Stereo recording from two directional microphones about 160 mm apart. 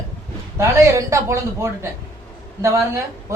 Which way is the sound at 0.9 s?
20° right (ahead or behind).